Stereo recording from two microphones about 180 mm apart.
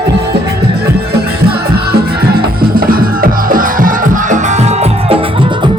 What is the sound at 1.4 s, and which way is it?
Music, 60° right (ahead or behind).